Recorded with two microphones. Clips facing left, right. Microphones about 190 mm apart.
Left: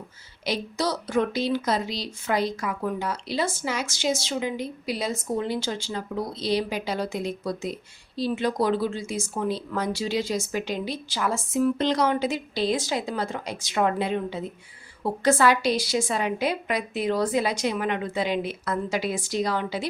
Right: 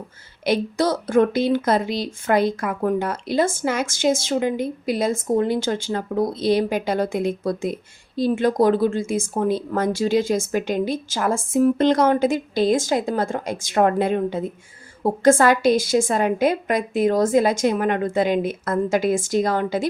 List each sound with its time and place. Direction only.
0.4 s speech: 55° right (ahead or behind)